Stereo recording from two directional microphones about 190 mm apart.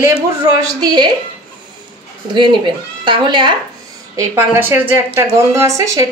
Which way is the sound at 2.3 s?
25° right (ahead or behind).